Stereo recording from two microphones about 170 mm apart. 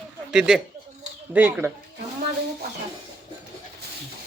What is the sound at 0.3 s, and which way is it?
Speech, 5° right (ahead or behind).